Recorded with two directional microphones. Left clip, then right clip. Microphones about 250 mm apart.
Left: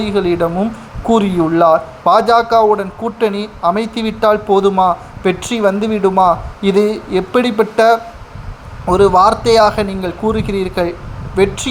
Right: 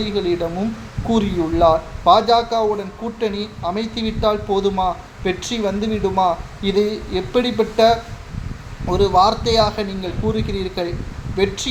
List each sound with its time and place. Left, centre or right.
0.0 s speech: left